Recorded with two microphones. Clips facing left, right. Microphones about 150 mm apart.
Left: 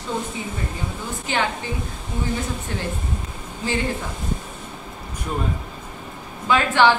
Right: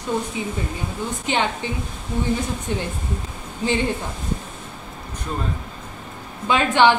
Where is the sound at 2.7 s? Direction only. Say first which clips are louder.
Right 7 dB; 20° right (ahead or behind).